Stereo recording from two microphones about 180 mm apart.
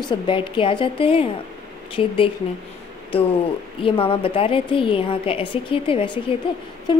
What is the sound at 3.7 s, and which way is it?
Speech, 30° left (ahead or behind).